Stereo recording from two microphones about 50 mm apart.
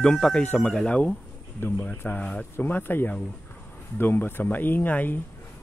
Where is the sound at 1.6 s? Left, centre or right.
Left.